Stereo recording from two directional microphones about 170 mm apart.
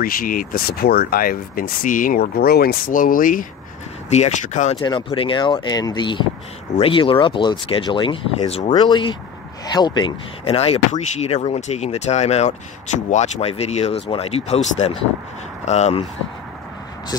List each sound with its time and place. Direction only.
0.0 s speech: 55° left (ahead or behind)
4.1 s speech: 45° left (ahead or behind)
4.8 s speech: 30° left (ahead or behind)